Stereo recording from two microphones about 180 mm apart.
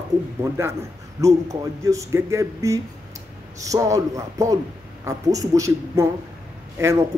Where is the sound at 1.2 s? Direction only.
15° right (ahead or behind).